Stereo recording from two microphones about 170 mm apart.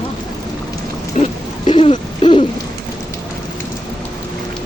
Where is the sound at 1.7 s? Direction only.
30° left (ahead or behind).